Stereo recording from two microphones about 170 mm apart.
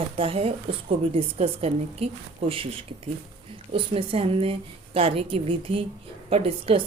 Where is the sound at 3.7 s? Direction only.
35° right (ahead or behind).